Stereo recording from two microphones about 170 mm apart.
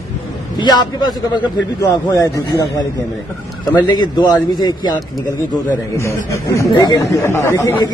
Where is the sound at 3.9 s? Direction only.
25° left (ahead or behind).